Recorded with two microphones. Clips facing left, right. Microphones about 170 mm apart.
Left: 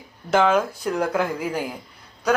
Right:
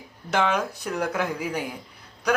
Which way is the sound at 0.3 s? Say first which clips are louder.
Left 5 dB; centre (ahead or behind).